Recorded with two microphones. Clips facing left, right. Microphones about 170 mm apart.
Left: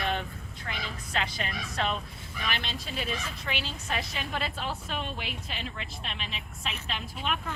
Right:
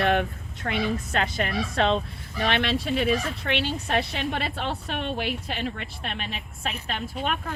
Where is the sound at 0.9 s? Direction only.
50° right (ahead or behind).